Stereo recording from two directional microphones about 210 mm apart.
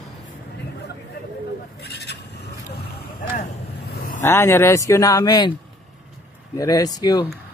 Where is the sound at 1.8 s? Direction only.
50° left (ahead or behind).